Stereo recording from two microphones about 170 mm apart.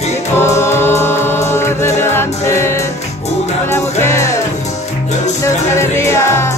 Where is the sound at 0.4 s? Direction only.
15° left (ahead or behind).